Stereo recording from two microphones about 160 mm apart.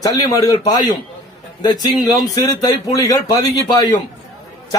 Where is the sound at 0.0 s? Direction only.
20° left (ahead or behind).